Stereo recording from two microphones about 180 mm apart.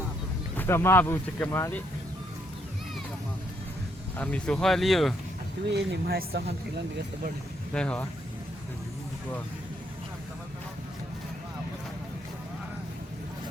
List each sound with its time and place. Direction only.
0.5 s speech: 10° left (ahead or behind)
4.2 s speech: 5° left (ahead or behind)
5.7 s speech: 65° right (ahead or behind)
7.7 s speech: 5° left (ahead or behind)